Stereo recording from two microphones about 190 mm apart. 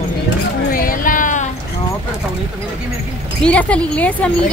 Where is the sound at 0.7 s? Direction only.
45° left (ahead or behind).